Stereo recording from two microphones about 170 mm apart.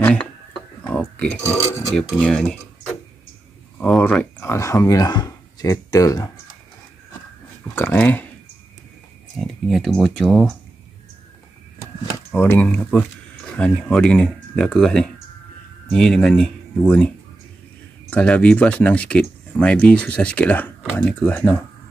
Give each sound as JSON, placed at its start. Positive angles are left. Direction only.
{"t": 0.0, "sound": "speech", "side_deg": 5}
{"t": 0.9, "sound": "burping", "side_deg": 5}
{"t": 2.0, "sound": "speech", "side_deg": 5}
{"t": 7.7, "sound": "speech", "side_deg": 10}
{"t": 9.4, "sound": "speech", "side_deg": 0}
{"t": 12.3, "sound": "speech", "side_deg": 10}
{"t": 18.1, "sound": "speech", "side_deg": 5}